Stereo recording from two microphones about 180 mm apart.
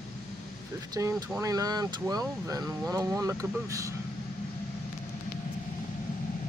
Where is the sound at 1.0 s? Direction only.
20° right (ahead or behind).